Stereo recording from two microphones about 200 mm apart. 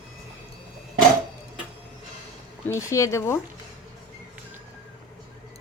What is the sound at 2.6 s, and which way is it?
Speech, 15° left (ahead or behind).